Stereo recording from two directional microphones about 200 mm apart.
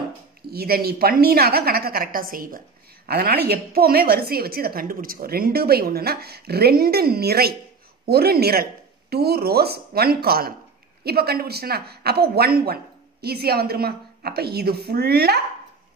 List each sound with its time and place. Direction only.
0.5 s a woman's voice: 50° right (ahead or behind)